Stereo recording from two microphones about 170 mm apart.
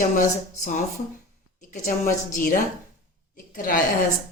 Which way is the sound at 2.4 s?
55° left (ahead or behind).